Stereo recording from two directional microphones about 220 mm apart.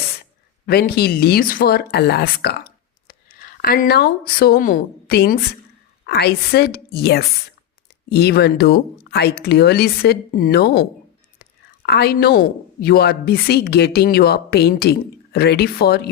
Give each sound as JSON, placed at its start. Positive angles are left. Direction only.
{"t": 0.1, "sound": "a woman's voice", "side_deg": 45}
{"t": 11.9, "sound": "a woman's voice", "side_deg": 45}